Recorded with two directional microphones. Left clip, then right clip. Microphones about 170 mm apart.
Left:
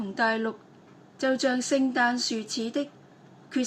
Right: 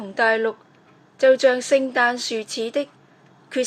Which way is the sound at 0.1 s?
35° right (ahead or behind).